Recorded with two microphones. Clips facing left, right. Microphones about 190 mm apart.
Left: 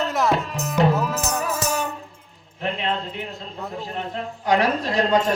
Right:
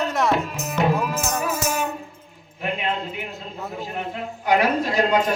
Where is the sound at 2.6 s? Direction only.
10° right (ahead or behind).